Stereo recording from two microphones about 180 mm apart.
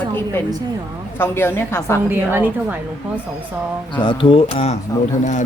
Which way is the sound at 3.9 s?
25° left (ahead or behind).